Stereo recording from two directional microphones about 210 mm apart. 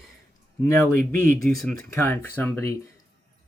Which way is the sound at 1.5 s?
5° left (ahead or behind).